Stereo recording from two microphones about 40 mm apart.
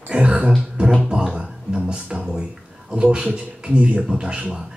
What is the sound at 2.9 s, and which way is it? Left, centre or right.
Speech, right.